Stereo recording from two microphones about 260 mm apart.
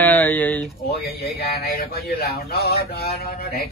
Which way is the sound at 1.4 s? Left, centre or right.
Left.